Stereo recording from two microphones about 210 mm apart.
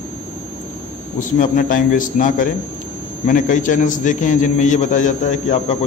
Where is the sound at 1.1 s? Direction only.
40° left (ahead or behind).